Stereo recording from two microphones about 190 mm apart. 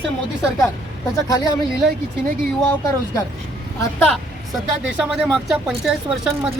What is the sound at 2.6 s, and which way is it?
Speech, 15° left (ahead or behind).